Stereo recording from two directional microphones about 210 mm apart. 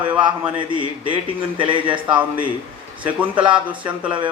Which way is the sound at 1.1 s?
25° right (ahead or behind).